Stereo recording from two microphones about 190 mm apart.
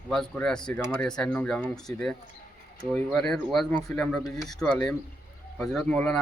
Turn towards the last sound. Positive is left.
turn(degrees=5)  # may be behind; listen again after turning